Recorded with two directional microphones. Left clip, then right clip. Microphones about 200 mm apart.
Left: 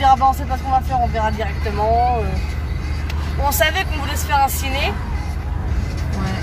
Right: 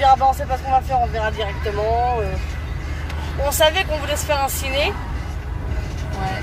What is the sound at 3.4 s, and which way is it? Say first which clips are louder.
Speech: right 1 dB; centre (ahead or behind).